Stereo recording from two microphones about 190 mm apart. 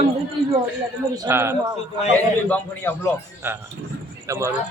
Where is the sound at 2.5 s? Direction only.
10° left (ahead or behind).